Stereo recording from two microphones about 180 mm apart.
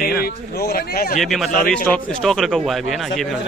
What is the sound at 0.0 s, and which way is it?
A man's voice, 60° left (ahead or behind).